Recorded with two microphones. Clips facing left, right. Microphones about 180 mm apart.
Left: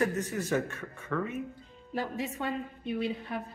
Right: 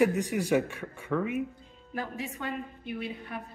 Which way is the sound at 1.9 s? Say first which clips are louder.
Left 2 dB; 25° left (ahead or behind).